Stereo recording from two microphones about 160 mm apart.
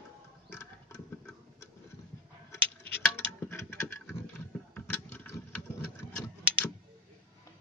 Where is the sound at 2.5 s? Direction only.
10° left (ahead or behind).